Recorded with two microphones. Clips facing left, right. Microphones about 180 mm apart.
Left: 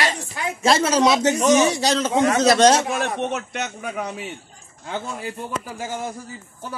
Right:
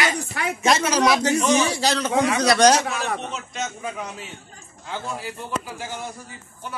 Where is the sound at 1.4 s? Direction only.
45° left (ahead or behind).